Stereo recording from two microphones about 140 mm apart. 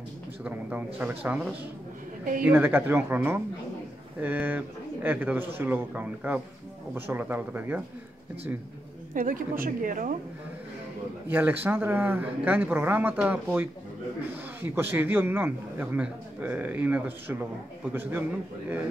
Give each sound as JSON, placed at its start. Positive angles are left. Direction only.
{"t": 0.4, "sound": "a man's voice", "side_deg": -10}
{"t": 9.1, "sound": "a woman's voice", "side_deg": -75}
{"t": 11.2, "sound": "a man's voice", "side_deg": -15}